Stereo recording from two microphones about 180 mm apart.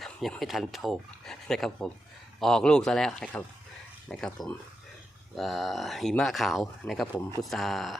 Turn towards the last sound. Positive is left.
turn(degrees=0)  # may be behind; listen again after turning